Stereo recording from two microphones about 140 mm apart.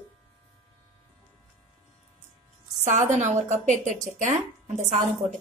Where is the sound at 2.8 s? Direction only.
60° right (ahead or behind).